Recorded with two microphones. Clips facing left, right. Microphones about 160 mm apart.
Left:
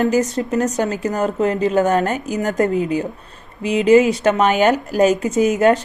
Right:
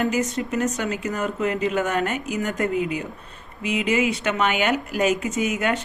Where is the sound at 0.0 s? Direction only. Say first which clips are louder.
Left 6 dB; 35° left (ahead or behind).